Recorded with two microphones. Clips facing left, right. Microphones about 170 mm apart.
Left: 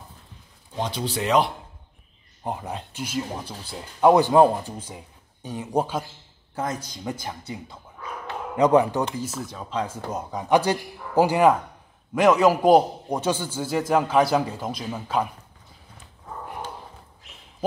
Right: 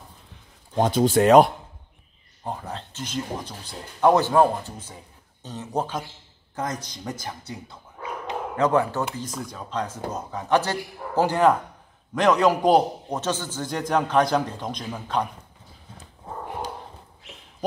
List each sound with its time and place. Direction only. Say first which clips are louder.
0.7 s speech: right 9 dB; 45° right (ahead or behind)
2.4 s speech: left 2 dB; 15° left (ahead or behind)
8.5 s speech: left 4 dB; 15° left (ahead or behind)